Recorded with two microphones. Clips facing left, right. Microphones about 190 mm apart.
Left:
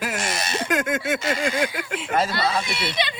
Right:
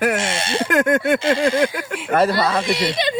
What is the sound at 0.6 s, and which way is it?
Speech, 65° right (ahead or behind).